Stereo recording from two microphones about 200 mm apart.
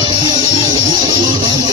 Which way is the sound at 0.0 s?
25° right (ahead or behind).